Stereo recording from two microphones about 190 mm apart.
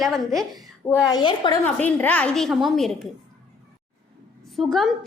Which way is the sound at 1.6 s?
10° left (ahead or behind).